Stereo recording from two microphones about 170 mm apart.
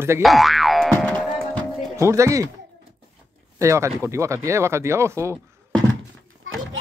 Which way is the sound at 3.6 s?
15° right (ahead or behind).